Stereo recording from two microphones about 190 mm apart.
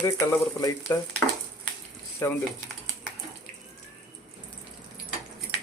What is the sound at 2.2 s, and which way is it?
Speech, 15° left (ahead or behind).